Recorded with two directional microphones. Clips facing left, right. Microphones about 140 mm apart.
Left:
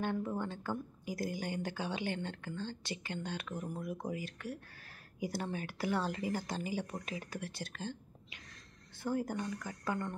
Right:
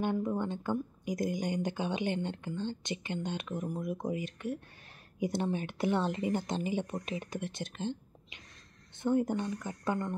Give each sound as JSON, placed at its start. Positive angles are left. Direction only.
{"t": 0.0, "sound": "speech", "side_deg": -15}